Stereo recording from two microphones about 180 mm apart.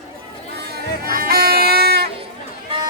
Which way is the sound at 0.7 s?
55° right (ahead or behind).